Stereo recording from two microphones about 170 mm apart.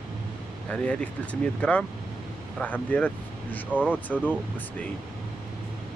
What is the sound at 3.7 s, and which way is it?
Speech, 5° right (ahead or behind).